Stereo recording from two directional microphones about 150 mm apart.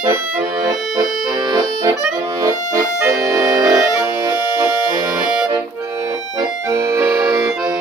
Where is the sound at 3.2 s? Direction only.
25° right (ahead or behind).